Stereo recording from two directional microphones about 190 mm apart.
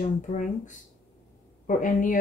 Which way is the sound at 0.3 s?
45° left (ahead or behind).